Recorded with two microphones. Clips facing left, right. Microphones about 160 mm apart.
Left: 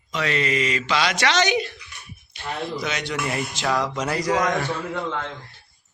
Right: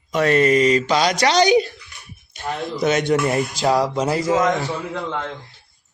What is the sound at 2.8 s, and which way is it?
Speech, 50° right (ahead or behind).